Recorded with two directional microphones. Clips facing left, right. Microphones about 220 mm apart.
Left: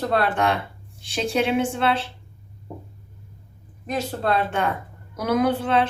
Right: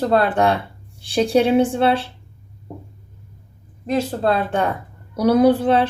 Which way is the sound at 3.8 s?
30° right (ahead or behind).